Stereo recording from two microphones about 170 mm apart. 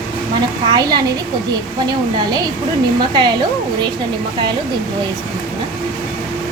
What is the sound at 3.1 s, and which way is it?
Speech, 25° right (ahead or behind).